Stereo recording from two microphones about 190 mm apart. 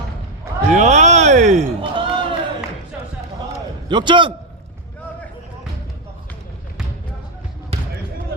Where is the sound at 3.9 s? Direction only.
25° right (ahead or behind).